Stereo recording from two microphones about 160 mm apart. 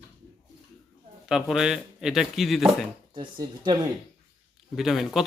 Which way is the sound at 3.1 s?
25° right (ahead or behind).